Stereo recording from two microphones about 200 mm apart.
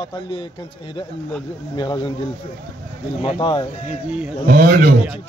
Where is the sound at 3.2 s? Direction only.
25° left (ahead or behind).